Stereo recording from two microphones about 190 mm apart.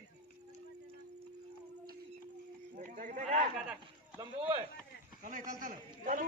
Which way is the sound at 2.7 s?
45° right (ahead or behind).